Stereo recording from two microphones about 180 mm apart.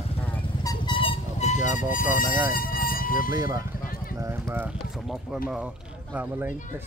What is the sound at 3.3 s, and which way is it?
Speech, 20° right (ahead or behind).